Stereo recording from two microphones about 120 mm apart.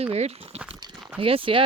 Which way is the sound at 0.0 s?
60° right (ahead or behind).